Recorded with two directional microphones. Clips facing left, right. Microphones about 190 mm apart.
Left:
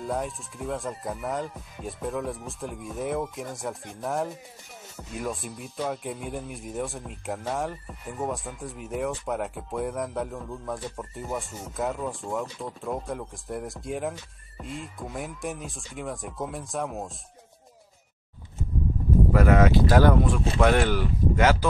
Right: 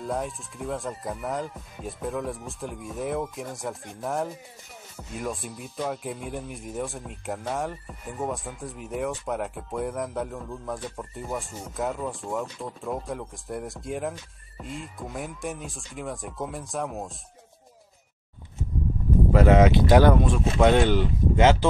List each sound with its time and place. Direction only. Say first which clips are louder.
0.0 s speech: even; centre (ahead or behind)
19.3 s speech: right 3 dB; 25° right (ahead or behind)